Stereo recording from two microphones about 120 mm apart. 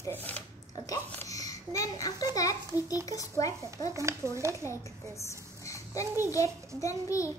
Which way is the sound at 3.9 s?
25° right (ahead or behind).